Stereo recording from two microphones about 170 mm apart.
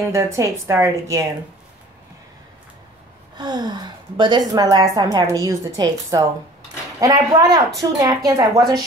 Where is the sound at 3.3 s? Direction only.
25° right (ahead or behind).